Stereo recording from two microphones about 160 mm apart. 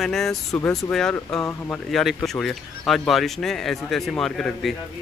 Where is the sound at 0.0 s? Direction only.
Centre (ahead or behind).